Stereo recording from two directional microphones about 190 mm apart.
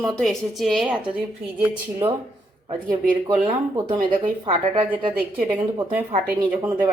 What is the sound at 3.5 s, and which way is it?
Speech, 20° right (ahead or behind).